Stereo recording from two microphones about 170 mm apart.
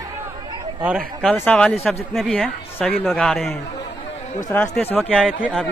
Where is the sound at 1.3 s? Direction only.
10° left (ahead or behind).